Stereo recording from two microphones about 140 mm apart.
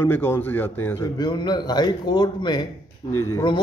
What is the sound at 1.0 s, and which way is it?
A man's voice, 30° left (ahead or behind).